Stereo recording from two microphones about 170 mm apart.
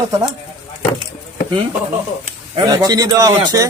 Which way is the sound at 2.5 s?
25° right (ahead or behind).